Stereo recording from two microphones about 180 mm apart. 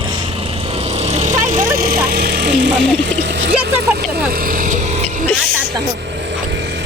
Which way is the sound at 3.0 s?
70° right (ahead or behind).